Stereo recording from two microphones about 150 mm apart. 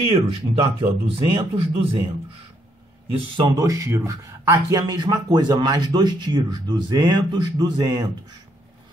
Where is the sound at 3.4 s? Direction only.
25° right (ahead or behind).